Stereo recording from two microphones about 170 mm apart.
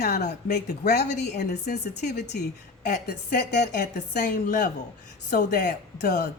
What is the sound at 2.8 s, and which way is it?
A woman's voice, 50° left (ahead or behind).